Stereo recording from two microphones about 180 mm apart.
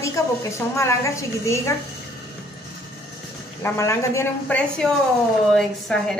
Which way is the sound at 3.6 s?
15° left (ahead or behind).